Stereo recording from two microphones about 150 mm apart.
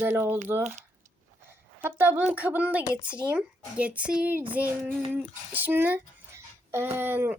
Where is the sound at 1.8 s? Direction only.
15° right (ahead or behind).